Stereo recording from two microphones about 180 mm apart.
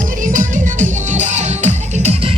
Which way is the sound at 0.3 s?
45° right (ahead or behind).